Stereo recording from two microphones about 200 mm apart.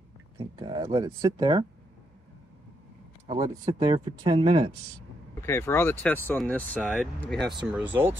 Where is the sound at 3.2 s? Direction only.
25° right (ahead or behind).